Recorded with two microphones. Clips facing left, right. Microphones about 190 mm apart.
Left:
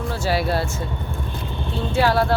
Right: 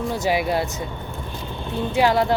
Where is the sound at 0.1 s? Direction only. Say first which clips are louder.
Even; 15° right (ahead or behind).